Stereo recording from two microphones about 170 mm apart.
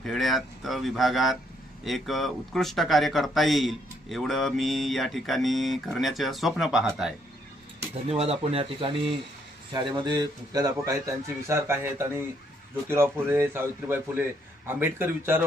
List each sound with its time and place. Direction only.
0.0 s speech: centre (ahead or behind)
8.1 s speech: 35° right (ahead or behind)
9.9 s a man's voice: 25° right (ahead or behind)